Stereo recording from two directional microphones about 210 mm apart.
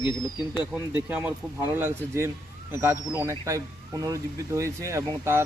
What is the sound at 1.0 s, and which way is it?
Speech, 10° right (ahead or behind).